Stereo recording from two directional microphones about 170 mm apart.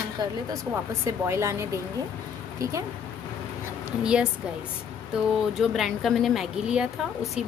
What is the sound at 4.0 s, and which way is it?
Speech, 5° right (ahead or behind).